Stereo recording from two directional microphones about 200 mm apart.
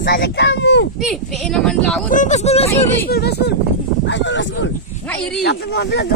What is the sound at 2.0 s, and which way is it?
Speech, 40° left (ahead or behind).